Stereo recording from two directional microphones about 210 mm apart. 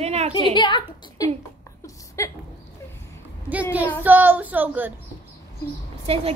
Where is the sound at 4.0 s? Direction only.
10° right (ahead or behind).